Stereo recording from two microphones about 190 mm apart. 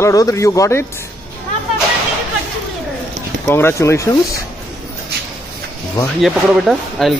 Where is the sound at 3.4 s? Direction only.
15° left (ahead or behind).